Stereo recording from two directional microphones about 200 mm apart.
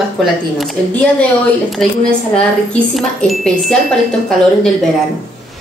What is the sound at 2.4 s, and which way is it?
Speech, 5° left (ahead or behind).